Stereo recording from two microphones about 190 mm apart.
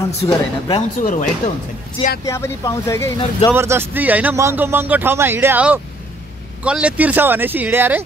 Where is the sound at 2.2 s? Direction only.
15° left (ahead or behind).